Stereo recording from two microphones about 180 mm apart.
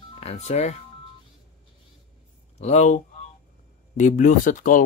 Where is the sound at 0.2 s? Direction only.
35° left (ahead or behind).